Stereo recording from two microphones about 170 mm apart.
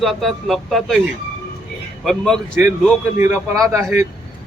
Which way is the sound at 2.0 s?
Centre (ahead or behind).